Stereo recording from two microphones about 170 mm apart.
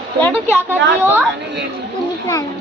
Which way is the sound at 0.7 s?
10° right (ahead or behind).